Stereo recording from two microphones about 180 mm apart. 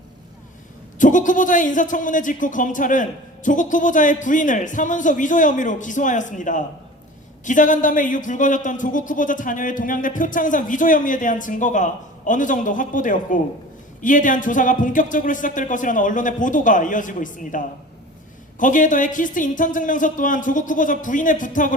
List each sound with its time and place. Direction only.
0.9 s speech: 45° left (ahead or behind)
18.6 s speech: 45° left (ahead or behind)